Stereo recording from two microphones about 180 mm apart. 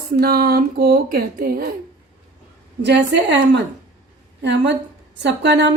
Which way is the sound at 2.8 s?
70° right (ahead or behind).